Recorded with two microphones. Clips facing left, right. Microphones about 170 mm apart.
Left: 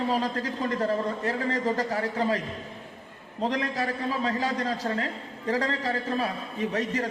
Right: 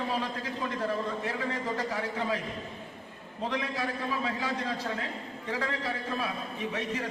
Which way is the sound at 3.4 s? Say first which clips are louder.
Left 4 dB; 40° left (ahead or behind).